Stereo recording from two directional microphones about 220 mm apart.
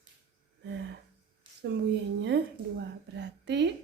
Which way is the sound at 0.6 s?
55° right (ahead or behind).